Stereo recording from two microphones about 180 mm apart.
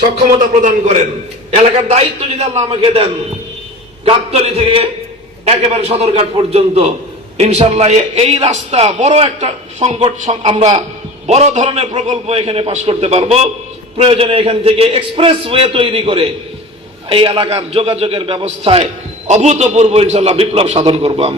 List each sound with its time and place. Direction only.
0.2 s a man's voice: 45° right (ahead or behind)